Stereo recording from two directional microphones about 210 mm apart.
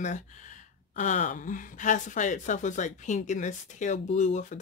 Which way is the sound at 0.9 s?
35° left (ahead or behind).